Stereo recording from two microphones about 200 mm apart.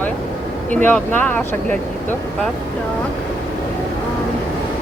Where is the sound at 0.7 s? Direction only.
5° left (ahead or behind).